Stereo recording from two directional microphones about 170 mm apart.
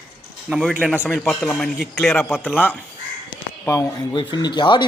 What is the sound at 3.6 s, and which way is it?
A man's voice, 20° left (ahead or behind).